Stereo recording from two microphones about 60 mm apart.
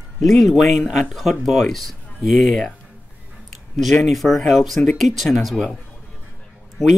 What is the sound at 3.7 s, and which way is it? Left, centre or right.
Speech, centre.